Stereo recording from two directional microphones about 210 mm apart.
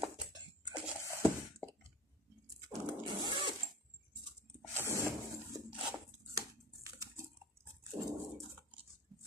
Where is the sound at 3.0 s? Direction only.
20° right (ahead or behind).